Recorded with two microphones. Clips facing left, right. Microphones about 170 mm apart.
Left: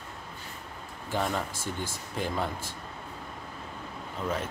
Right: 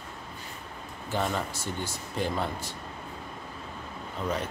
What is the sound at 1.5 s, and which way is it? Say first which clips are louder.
Speech: right 1 dB; 50° left (ahead or behind).